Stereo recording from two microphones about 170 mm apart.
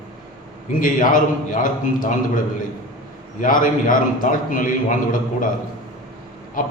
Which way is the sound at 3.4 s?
55° left (ahead or behind).